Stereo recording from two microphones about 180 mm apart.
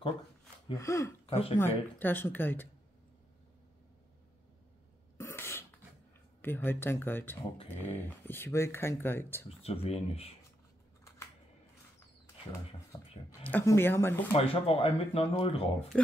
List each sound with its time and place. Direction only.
0.7 s speech: 15° left (ahead or behind)
1.2 s a sound: 30° left (ahead or behind)
1.6 s speech: 10° left (ahead or behind)
5.1 s cough: 15° left (ahead or behind)
6.4 s speech: 10° left (ahead or behind)
9.6 s speech: 35° left (ahead or behind)
12.9 s speech: 15° left (ahead or behind)
14.3 s speech: 30° left (ahead or behind)